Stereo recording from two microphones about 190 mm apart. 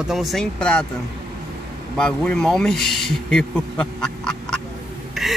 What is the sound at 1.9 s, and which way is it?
Speech, 5° left (ahead or behind).